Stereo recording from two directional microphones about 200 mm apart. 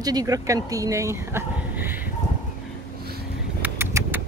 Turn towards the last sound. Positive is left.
turn(degrees=-10)  # may be behind; listen again after turning